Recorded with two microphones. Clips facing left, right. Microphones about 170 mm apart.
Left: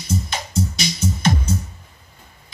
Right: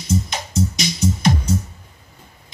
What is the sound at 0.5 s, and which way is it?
Music, 20° right (ahead or behind).